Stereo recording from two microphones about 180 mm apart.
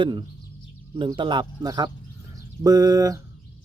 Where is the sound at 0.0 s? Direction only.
25° right (ahead or behind).